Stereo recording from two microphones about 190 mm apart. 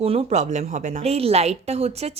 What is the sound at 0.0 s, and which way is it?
A woman's voice, 30° right (ahead or behind).